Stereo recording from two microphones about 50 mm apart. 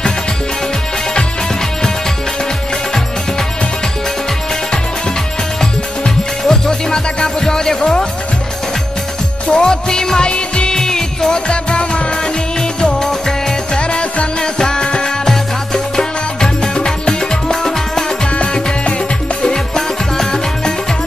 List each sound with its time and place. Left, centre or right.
5.6 s music: centre
9.5 s music: centre
13.7 s music: left
18.3 s music: left
19.4 s music: centre